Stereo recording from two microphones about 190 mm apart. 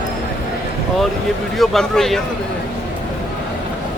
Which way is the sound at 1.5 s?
Centre (ahead or behind).